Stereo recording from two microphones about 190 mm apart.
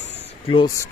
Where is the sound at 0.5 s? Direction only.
20° left (ahead or behind).